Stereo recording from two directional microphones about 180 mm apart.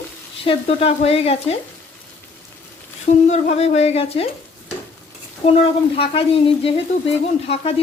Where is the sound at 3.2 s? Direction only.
40° left (ahead or behind).